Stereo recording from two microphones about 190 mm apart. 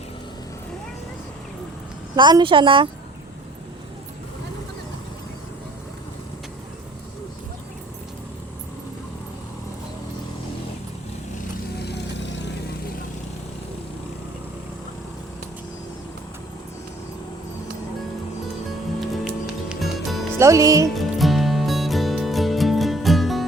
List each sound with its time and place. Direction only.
2.1 s speech: 25° right (ahead or behind)
11.8 s vehicle: 60° left (ahead or behind)
18.9 s music: centre (ahead or behind)
20.4 s speech: 15° right (ahead or behind)
20.9 s music: centre (ahead or behind)